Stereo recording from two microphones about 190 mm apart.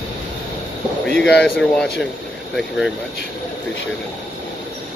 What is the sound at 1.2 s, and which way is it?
Speech, 5° left (ahead or behind).